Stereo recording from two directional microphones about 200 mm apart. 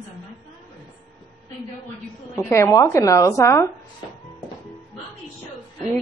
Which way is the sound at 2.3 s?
15° left (ahead or behind).